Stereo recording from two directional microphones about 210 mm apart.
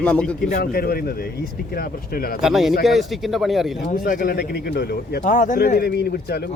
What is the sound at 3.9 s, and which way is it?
Speech, 40° left (ahead or behind).